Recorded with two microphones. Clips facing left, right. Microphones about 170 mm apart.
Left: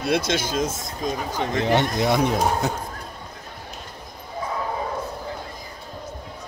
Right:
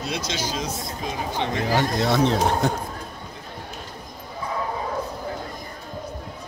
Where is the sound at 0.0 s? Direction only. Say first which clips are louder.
Left 6 dB; 55° left (ahead or behind).